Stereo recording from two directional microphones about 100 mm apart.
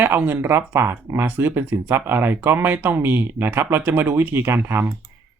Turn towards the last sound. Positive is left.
turn(degrees=-25)  # may be behind; listen again after turning